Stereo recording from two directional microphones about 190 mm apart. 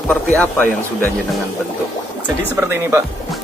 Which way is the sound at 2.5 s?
15° right (ahead or behind).